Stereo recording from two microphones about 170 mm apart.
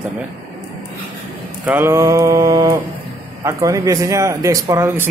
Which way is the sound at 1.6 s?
10° right (ahead or behind).